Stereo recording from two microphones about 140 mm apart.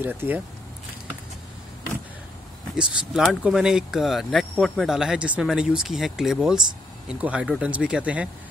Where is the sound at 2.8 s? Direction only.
5° right (ahead or behind).